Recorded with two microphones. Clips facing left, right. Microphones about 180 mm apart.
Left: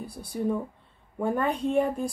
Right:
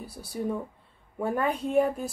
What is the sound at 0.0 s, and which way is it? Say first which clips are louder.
Speech: left 3 dB; 5° right (ahead or behind).